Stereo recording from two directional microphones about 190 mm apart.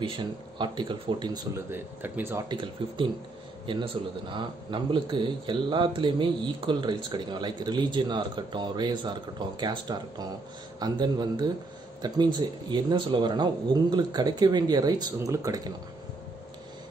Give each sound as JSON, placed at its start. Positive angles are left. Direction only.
{"t": 0.0, "sound": "speech", "side_deg": -25}
{"t": 2.5, "sound": "speech", "side_deg": -25}